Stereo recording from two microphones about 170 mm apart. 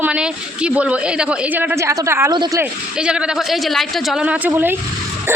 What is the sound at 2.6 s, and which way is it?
A woman's voice, 5° right (ahead or behind).